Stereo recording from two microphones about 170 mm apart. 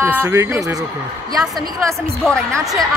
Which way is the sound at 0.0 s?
15° right (ahead or behind).